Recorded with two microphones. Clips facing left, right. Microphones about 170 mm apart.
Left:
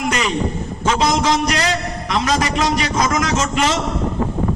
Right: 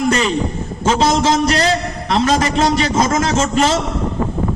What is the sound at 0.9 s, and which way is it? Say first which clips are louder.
A man's voice: right 2 dB; 30° right (ahead or behind).